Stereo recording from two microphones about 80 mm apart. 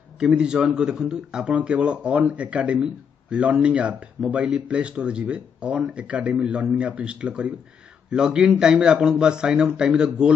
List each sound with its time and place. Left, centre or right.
0.2 s speech: centre